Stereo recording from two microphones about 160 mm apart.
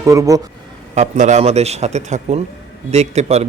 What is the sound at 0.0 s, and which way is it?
Speech, 20° right (ahead or behind).